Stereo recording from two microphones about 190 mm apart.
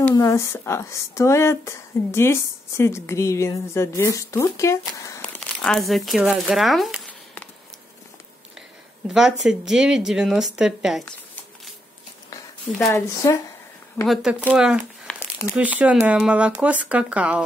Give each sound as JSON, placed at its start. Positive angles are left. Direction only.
{"t": 0.1, "sound": "speech", "side_deg": 15}
{"t": 5.2, "sound": "speech", "side_deg": 5}
{"t": 9.0, "sound": "speech", "side_deg": 0}
{"t": 12.7, "sound": "speech", "side_deg": 15}
{"t": 14.0, "sound": "speech", "side_deg": 0}